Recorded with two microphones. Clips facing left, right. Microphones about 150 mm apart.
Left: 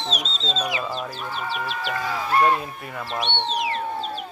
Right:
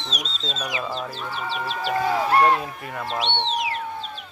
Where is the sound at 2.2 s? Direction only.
65° right (ahead or behind).